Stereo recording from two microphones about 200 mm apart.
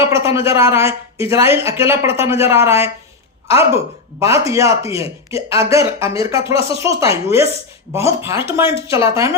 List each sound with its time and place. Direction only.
0.0 s speech: 15° right (ahead or behind)